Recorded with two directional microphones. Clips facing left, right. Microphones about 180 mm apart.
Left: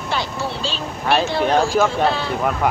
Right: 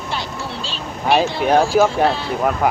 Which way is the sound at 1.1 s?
10° right (ahead or behind).